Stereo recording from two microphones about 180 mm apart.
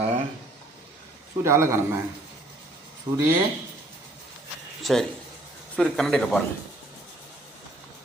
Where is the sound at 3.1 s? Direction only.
25° right (ahead or behind).